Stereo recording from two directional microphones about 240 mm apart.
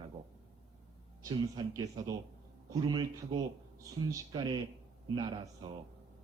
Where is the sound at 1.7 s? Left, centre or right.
Centre.